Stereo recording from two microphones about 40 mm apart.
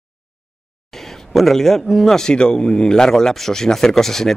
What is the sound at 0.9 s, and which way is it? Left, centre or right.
Speech, centre.